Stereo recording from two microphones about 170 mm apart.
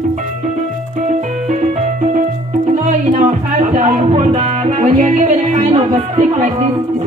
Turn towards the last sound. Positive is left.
turn(degrees=-35)  # may be behind; listen again after turning